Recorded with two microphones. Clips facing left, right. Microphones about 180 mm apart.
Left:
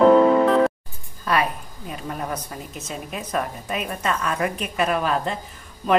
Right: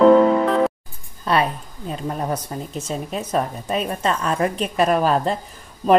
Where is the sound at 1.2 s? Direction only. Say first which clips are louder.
Right 3 dB; 30° right (ahead or behind).